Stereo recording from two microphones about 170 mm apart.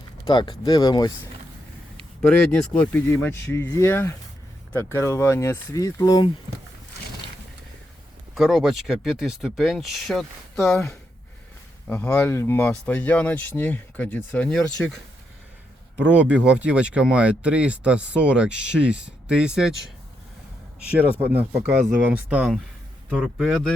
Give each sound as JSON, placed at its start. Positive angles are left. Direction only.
{"t": 0.3, "sound": "speech", "side_deg": 25}
{"t": 2.5, "sound": "speech", "side_deg": 10}
{"t": 8.4, "sound": "speech", "side_deg": 0}
{"t": 11.9, "sound": "speech", "side_deg": 10}
{"t": 16.4, "sound": "speech", "side_deg": -5}
{"t": 20.9, "sound": "speech", "side_deg": -10}